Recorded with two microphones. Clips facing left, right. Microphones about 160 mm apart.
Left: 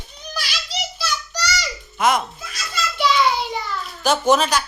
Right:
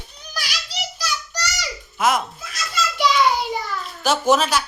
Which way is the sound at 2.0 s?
5° right (ahead or behind).